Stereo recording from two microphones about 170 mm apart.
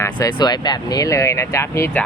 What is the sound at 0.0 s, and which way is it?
Speech, 20° left (ahead or behind).